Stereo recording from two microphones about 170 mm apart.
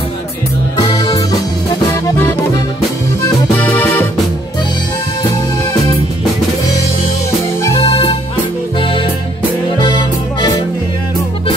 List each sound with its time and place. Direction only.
0.7 s music: 30° left (ahead or behind)
3.5 s music: 10° left (ahead or behind)
7.8 s music: 35° left (ahead or behind)